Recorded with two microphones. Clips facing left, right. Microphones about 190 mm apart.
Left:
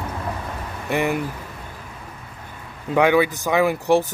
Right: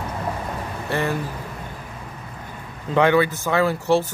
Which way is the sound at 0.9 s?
15° left (ahead or behind).